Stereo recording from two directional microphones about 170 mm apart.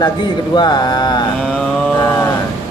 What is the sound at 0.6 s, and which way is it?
Speech, 25° left (ahead or behind).